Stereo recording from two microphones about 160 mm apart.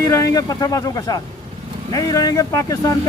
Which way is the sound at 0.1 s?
20° left (ahead or behind).